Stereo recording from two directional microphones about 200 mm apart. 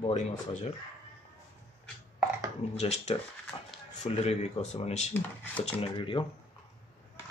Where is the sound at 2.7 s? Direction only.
35° left (ahead or behind).